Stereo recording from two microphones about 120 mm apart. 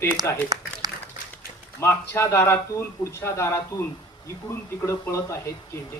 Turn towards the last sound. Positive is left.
turn(degrees=25)  # may be behind; listen again after turning